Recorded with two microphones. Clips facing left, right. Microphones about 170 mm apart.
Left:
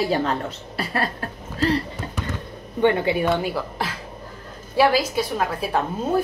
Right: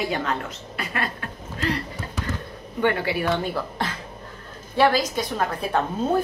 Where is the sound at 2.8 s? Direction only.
20° left (ahead or behind).